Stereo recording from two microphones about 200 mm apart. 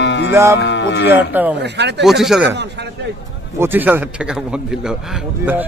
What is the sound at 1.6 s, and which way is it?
Speech, 60° right (ahead or behind).